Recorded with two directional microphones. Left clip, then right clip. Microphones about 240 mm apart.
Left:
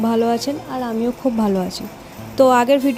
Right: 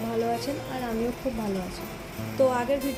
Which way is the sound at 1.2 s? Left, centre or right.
Left.